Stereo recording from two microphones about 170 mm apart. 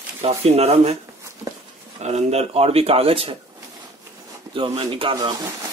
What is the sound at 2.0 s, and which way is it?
Speech, 40° right (ahead or behind).